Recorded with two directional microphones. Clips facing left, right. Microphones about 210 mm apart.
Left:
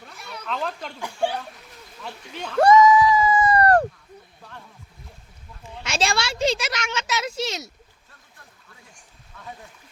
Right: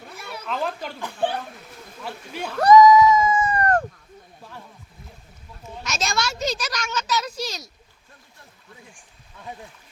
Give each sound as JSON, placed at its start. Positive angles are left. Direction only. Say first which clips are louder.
{"t": 0.3, "sound": "speech", "louder": "right 2 dB", "side_deg": -5}
{"t": 1.0, "sound": "speech", "louder": "even", "side_deg": 10}
{"t": 2.3, "sound": "speech", "louder": "right 3 dB", "side_deg": -10}
{"t": 2.6, "sound": "a sound", "louder": "right 2 dB", "side_deg": 25}
{"t": 5.8, "sound": "a woman's voice", "louder": "left 2 dB", "side_deg": 30}